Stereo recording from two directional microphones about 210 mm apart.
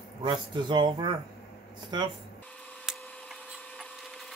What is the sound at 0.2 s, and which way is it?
Speech, 20° right (ahead or behind).